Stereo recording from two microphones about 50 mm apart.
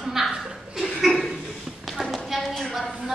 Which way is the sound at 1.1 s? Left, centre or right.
Centre.